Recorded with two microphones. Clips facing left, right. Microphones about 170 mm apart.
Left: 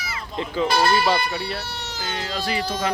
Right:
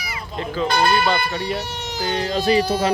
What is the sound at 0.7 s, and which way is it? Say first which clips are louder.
Speech: right 1 dB; 5° left (ahead or behind).